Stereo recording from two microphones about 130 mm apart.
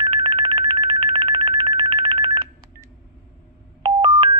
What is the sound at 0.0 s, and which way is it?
Telephone, 40° right (ahead or behind).